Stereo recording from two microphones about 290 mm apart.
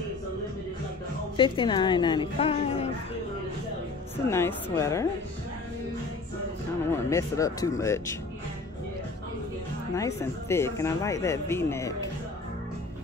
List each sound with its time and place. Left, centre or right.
1.3 s speech: centre
4.3 s speech: centre
6.9 s speech: centre
9.9 s speech: centre